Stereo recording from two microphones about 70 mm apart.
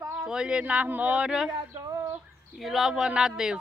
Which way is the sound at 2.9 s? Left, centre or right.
Centre.